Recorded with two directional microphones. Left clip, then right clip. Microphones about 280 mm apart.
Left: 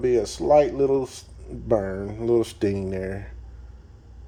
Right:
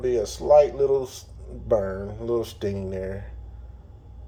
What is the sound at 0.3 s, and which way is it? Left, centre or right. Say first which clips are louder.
Speech: right 3 dB; left.